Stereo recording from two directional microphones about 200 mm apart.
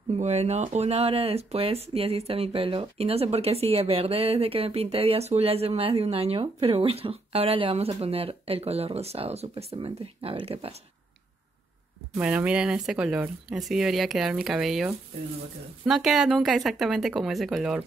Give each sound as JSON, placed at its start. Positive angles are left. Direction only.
{"t": 0.2, "sound": "speech", "side_deg": -35}
{"t": 12.2, "sound": "speech", "side_deg": -5}